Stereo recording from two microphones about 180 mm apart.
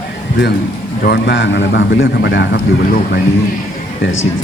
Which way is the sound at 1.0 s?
75° left (ahead or behind).